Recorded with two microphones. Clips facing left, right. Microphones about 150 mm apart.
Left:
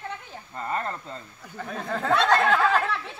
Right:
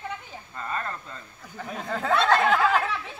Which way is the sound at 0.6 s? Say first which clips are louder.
Left 3 dB; 20° left (ahead or behind).